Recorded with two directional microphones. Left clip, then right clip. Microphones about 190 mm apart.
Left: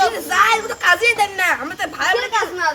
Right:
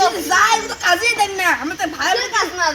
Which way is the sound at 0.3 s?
5° left (ahead or behind).